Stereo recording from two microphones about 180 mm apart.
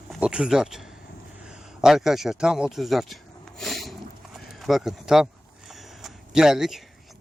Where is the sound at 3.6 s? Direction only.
Centre (ahead or behind).